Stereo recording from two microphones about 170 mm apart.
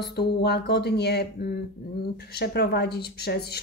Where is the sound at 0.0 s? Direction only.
75° left (ahead or behind).